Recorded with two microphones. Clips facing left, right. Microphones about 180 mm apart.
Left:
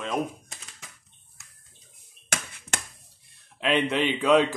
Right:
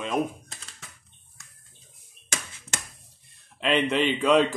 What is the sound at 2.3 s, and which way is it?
Finger snapping, 55° left (ahead or behind).